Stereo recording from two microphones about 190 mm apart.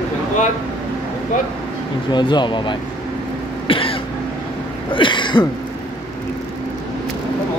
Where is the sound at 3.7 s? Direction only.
30° left (ahead or behind).